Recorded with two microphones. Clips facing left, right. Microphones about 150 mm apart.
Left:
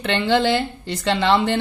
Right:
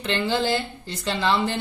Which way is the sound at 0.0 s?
65° left (ahead or behind).